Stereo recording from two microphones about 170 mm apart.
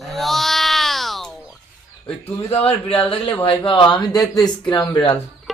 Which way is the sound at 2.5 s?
35° left (ahead or behind).